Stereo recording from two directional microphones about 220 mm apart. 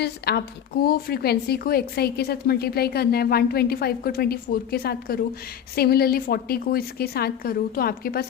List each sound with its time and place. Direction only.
0.0 s a woman's voice: 45° left (ahead or behind)